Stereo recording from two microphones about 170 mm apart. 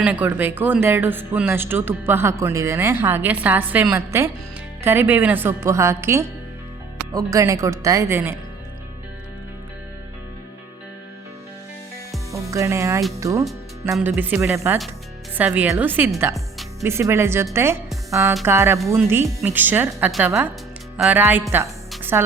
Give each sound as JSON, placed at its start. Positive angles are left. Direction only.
{"t": 0.0, "sound": "speech", "side_deg": -10}
{"t": 12.5, "sound": "speech", "side_deg": -15}
{"t": 13.9, "sound": "a woman's voice", "side_deg": -5}
{"t": 21.5, "sound": "music", "side_deg": -15}